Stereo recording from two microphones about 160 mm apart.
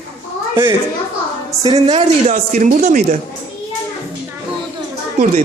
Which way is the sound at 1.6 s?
35° right (ahead or behind).